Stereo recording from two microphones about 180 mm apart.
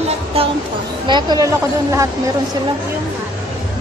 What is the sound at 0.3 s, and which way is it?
Speech, 35° right (ahead or behind).